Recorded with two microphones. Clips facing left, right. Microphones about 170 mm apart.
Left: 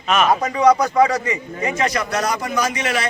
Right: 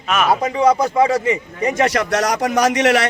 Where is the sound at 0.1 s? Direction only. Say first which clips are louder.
Even; 5° right (ahead or behind).